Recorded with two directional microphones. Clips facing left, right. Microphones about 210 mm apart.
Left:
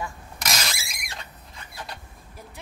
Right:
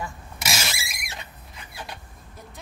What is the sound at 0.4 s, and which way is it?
Vehicle, 5° right (ahead or behind).